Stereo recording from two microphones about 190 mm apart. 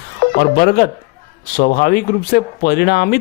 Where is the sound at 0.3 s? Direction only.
55° left (ahead or behind).